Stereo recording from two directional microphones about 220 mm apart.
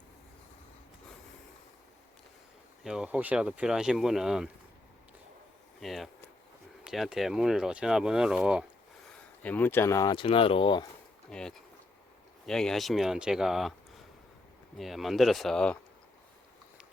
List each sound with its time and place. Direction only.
2.8 s speech: 5° right (ahead or behind)
5.8 s a sound: centre (ahead or behind)
6.8 s speech: centre (ahead or behind)
9.4 s speech: 10° left (ahead or behind)
11.3 s speech: 5° left (ahead or behind)
14.8 s speech: centre (ahead or behind)